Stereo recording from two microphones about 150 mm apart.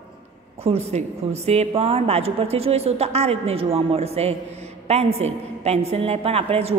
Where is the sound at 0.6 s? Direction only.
45° right (ahead or behind).